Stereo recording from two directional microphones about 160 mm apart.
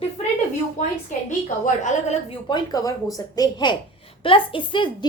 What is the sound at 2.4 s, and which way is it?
A woman's voice, 25° left (ahead or behind).